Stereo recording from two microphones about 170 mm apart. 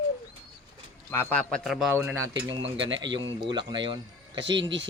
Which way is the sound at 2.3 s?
90° right.